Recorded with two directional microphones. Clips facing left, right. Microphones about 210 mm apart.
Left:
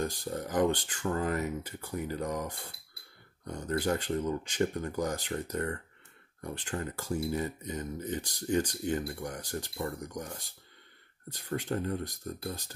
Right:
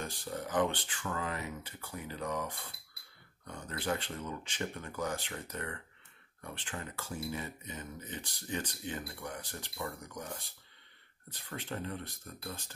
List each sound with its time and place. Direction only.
0.0 s speech: 40° left (ahead or behind)